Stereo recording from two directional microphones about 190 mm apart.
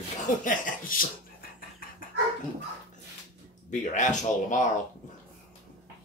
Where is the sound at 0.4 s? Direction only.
45° left (ahead or behind).